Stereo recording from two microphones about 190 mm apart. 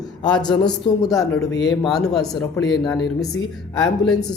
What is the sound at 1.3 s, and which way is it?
Speech, 65° left (ahead or behind).